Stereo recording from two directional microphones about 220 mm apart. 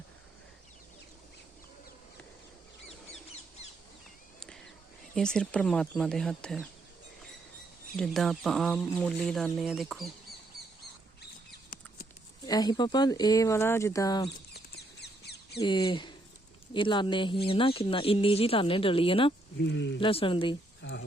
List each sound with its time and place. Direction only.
4.4 s a sound: centre (ahead or behind)
5.1 s speech: 5° left (ahead or behind)
7.9 s speech: centre (ahead or behind)
12.5 s speech: 20° left (ahead or behind)
14.3 s a sound: 50° left (ahead or behind)
15.6 s speech: 20° left (ahead or behind)
19.6 s speech: 55° left (ahead or behind)
20.0 s speech: 25° left (ahead or behind)